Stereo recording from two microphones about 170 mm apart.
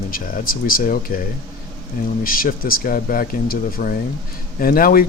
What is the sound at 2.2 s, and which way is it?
Speech, 55° left (ahead or behind).